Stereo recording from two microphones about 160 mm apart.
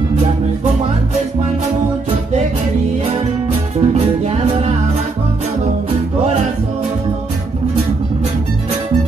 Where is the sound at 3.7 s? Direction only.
40° right (ahead or behind).